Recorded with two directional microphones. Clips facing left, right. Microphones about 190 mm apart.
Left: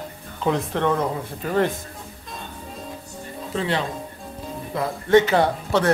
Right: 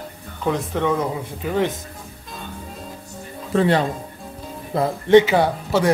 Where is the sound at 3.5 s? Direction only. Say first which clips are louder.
Right 7 dB; 45° right (ahead or behind).